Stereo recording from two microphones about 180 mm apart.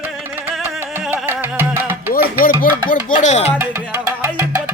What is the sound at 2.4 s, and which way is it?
Speech, 50° left (ahead or behind).